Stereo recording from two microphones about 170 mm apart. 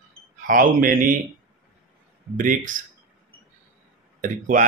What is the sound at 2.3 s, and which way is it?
Speech, 50° right (ahead or behind).